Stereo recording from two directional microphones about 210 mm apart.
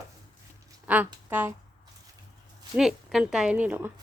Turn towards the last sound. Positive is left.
turn(degrees=-10)  # may be behind; listen again after turning